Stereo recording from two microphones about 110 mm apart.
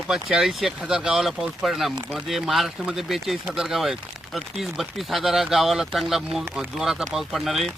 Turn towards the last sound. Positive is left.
turn(degrees=0)  # may be behind; listen again after turning